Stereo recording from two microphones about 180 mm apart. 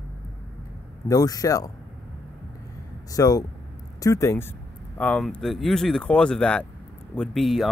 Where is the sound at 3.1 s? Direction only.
20° left (ahead or behind); by 7.6 s centre (ahead or behind).